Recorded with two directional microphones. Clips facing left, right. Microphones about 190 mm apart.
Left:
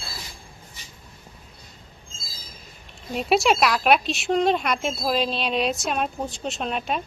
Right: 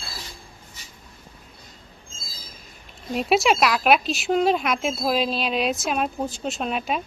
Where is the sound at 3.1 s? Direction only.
Centre (ahead or behind).